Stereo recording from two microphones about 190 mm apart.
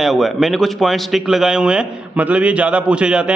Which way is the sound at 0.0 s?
Centre (ahead or behind).